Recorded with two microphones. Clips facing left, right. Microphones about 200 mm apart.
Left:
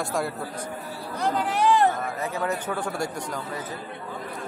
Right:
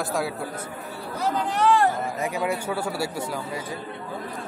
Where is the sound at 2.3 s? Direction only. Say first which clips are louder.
Even; 10° right (ahead or behind).